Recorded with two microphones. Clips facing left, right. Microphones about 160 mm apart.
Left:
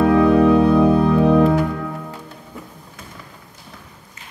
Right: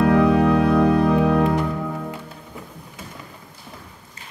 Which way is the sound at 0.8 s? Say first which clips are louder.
Left 3 dB; 20° left (ahead or behind).